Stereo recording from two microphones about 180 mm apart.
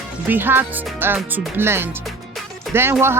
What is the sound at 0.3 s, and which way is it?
Speech, 10° right (ahead or behind).